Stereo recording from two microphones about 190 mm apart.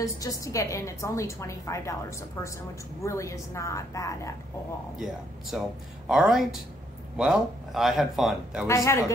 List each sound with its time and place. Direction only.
0.0 s a woman's voice: 15° left (ahead or behind)
4.9 s speech: centre (ahead or behind)
8.6 s a woman's voice: 15° left (ahead or behind)